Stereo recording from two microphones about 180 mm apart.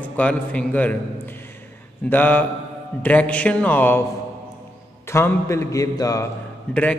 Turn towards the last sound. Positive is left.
turn(degrees=5)  # may be behind; listen again after turning